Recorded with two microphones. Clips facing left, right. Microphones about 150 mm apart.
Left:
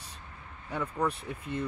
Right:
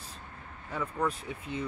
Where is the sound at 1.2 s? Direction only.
Centre (ahead or behind).